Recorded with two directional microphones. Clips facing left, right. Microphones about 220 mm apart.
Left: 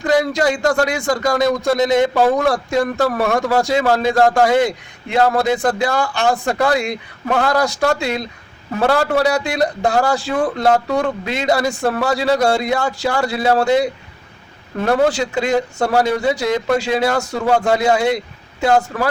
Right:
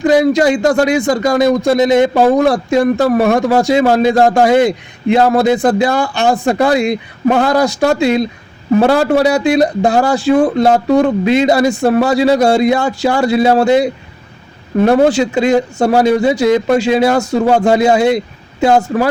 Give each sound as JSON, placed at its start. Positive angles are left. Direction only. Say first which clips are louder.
{"t": 0.0, "sound": "speech", "louder": "right 6 dB", "side_deg": -20}